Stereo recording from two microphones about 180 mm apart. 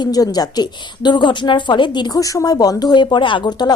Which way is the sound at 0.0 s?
20° left (ahead or behind).